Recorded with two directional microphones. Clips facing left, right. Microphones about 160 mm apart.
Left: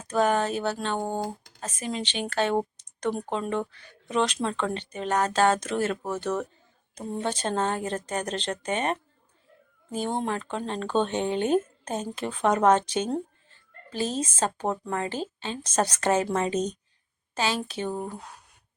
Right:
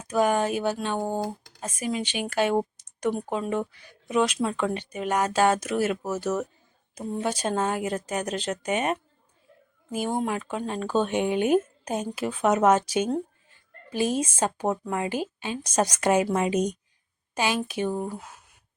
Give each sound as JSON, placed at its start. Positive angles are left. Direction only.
{"t": 0.1, "sound": "speech", "side_deg": -10}
{"t": 1.0, "sound": "speech", "side_deg": 0}
{"t": 17.9, "sound": "speech", "side_deg": 0}